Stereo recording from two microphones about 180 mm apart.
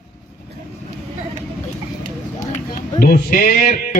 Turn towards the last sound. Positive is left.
turn(degrees=50)  # may be behind; listen again after turning